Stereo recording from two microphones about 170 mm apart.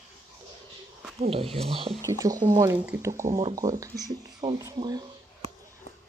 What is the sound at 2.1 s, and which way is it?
Speech, 20° right (ahead or behind).